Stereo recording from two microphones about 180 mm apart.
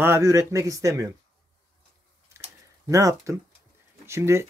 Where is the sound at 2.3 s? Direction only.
15° right (ahead or behind).